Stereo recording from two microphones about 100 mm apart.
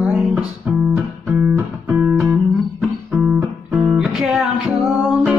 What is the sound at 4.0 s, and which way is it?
Music, 5° right (ahead or behind).